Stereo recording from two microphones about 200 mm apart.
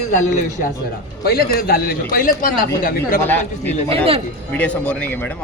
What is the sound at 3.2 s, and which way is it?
A man's voice, 10° left (ahead or behind).